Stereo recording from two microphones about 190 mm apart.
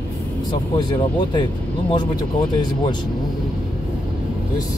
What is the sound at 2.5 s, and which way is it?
Speech, 25° left (ahead or behind).